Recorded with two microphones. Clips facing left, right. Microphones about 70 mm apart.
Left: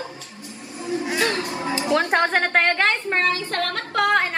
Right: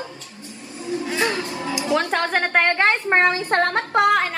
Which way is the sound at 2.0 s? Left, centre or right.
Left.